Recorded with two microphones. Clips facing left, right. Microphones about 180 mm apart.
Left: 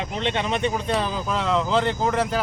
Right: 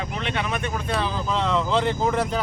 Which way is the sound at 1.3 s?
5° left (ahead or behind).